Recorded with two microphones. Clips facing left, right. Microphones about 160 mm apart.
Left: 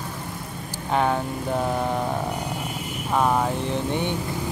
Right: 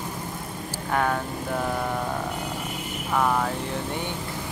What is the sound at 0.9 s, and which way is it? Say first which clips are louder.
Speech: left 3 dB; 20° left (ahead or behind).